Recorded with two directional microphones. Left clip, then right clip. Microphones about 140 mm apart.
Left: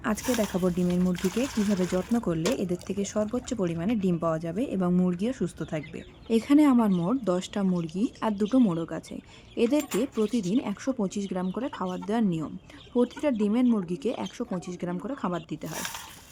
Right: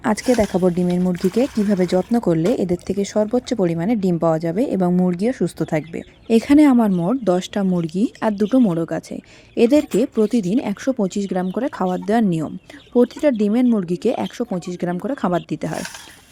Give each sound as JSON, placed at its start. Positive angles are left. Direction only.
{"t": 0.0, "sound": "speech", "side_deg": -50}
{"t": 5.5, "sound": "speech", "side_deg": -50}